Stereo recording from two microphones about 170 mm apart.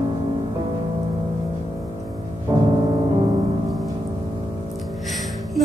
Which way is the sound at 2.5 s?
25° right (ahead or behind).